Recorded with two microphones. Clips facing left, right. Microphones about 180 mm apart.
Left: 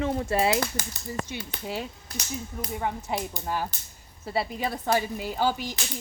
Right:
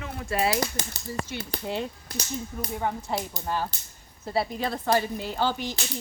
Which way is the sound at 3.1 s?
15° left (ahead or behind).